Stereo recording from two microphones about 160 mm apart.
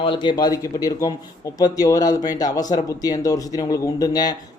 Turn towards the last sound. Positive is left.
turn(degrees=25)  # may be behind; listen again after turning